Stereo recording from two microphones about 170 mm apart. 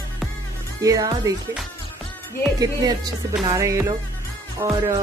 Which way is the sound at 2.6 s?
25° right (ahead or behind).